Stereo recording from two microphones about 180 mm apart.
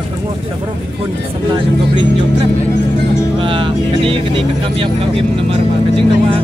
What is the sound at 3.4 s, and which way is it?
Speech, 30° right (ahead or behind).